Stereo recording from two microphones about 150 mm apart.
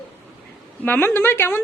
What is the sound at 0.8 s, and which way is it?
Speech, 15° left (ahead or behind).